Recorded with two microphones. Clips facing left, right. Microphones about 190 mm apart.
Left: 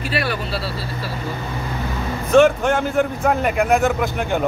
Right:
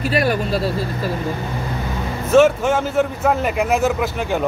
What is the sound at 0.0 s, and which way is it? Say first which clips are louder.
Speech: right 5 dB; 40° right (ahead or behind).